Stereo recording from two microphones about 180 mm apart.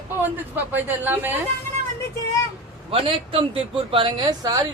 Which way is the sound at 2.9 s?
30° right (ahead or behind).